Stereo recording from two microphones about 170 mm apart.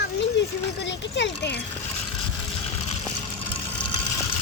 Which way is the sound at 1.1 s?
90° left.